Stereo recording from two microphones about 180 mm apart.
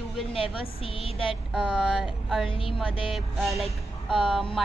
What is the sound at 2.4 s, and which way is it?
Speech, 30° left (ahead or behind).